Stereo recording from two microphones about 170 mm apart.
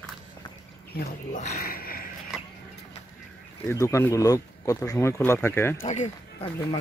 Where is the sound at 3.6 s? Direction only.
15° left (ahead or behind).